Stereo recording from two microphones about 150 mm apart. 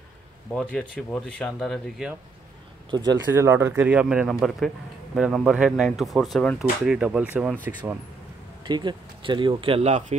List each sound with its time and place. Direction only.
0.5 s speech: 5° left (ahead or behind)
2.9 s speech: 30° right (ahead or behind)
3.3 s speech: 15° right (ahead or behind)
8.6 s speech: 30° right (ahead or behind); by 10.1 s 50° right (ahead or behind)